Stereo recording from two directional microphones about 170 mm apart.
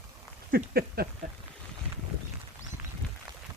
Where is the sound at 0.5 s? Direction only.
65° right (ahead or behind).